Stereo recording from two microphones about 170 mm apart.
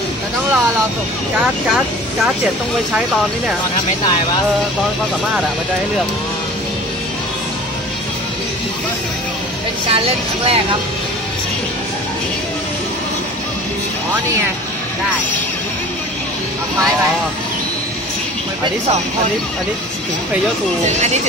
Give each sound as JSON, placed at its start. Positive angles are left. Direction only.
{"t": 9.8, "sound": "speech", "side_deg": -35}
{"t": 20.8, "sound": "speech", "side_deg": -40}